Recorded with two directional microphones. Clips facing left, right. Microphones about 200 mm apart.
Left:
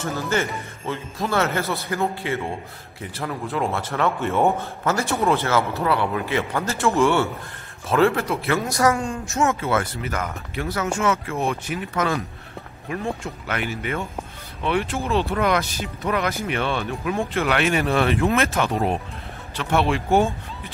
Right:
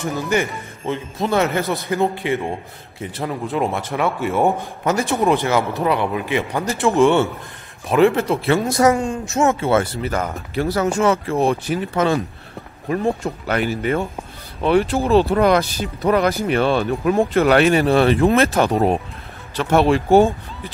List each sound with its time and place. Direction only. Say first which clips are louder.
0.0 s speech: right 3 dB; 15° right (ahead or behind); by 20.2 s 40° right (ahead or behind)